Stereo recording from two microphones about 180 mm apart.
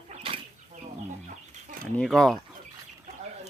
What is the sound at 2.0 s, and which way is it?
Speech, 5° left (ahead or behind).